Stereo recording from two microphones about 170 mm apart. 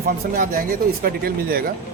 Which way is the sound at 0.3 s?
55° right (ahead or behind).